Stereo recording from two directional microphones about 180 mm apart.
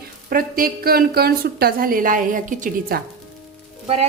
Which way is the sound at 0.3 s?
55° right (ahead or behind).